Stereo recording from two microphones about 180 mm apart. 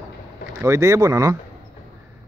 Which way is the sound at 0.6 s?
15° right (ahead or behind).